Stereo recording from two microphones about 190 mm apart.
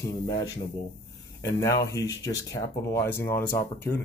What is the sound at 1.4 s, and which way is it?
Speech, 15° left (ahead or behind).